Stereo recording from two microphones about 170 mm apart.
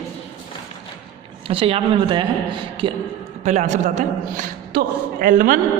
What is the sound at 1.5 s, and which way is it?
Speech, 30° right (ahead or behind).